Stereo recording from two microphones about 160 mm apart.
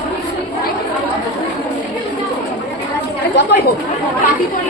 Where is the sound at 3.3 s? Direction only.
90° left.